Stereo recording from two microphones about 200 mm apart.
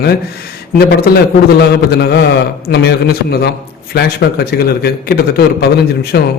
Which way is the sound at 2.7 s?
55° left (ahead or behind).